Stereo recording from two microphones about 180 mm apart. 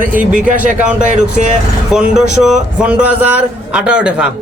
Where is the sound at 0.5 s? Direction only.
10° right (ahead or behind).